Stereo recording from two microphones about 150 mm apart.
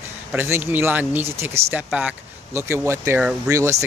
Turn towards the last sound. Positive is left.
turn(degrees=-20)  # may be behind; listen again after turning